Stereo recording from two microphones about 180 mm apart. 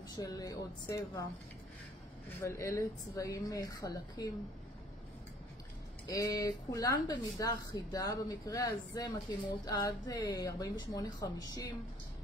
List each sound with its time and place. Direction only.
0.2 s speech: 20° left (ahead or behind)
2.4 s speech: 15° left (ahead or behind)
6.0 s speech: 20° left (ahead or behind)